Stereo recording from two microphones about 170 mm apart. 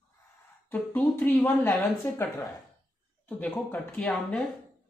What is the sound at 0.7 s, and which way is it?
Speech, 10° left (ahead or behind).